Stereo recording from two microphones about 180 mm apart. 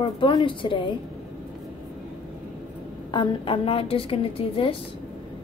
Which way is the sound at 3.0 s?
25° left (ahead or behind).